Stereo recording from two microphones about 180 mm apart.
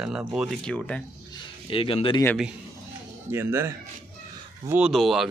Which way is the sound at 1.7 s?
30° left (ahead or behind).